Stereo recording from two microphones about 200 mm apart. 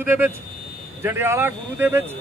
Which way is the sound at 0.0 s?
10° right (ahead or behind).